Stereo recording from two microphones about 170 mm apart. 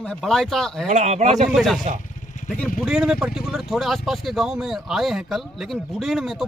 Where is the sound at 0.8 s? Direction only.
45° right (ahead or behind).